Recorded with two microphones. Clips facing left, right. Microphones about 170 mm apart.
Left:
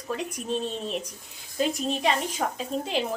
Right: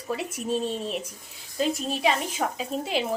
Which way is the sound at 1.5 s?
Centre (ahead or behind).